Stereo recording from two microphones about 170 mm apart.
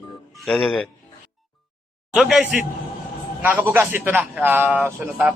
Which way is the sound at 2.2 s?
Centre (ahead or behind).